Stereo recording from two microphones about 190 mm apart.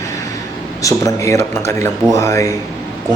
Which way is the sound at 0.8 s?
15° left (ahead or behind).